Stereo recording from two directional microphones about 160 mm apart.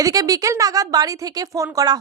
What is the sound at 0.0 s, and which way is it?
A woman's voice, 20° right (ahead or behind).